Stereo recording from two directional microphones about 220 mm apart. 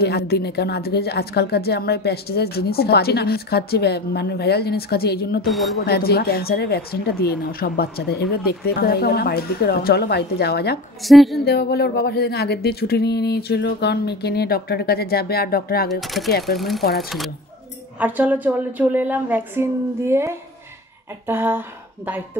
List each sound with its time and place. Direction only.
0.0 s a woman's voice: 45° left (ahead or behind)
5.5 s a woman's voice: centre (ahead or behind)
5.8 s a woman's voice: 45° left (ahead or behind)
11.0 s a woman's voice: centre (ahead or behind)
11.4 s a woman's voice: 45° left (ahead or behind)
15.9 s a woman's voice: centre (ahead or behind)
16.3 s a woman's voice: 45° left (ahead or behind)
16.5 s a woman's voice: centre (ahead or behind)